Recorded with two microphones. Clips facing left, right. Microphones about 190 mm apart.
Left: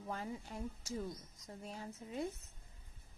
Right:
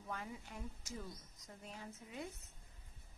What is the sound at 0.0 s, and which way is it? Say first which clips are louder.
A woman's voice: left 4 dB; 35° left (ahead or behind).